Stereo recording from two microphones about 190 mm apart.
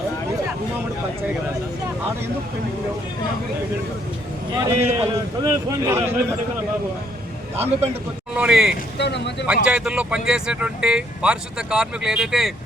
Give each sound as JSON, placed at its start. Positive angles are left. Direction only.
{"t": 4.5, "sound": "a man's voice", "side_deg": -20}
{"t": 8.4, "sound": "speech", "side_deg": -5}
{"t": 9.0, "sound": "speech", "side_deg": 65}
{"t": 9.5, "sound": "speech", "side_deg": -5}